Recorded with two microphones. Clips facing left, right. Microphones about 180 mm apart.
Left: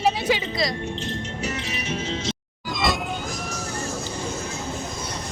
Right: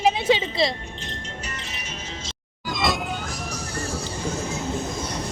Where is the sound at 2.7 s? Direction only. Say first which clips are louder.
Even; centre (ahead or behind).